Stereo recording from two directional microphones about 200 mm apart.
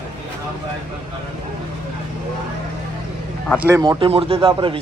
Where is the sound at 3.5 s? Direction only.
5° right (ahead or behind).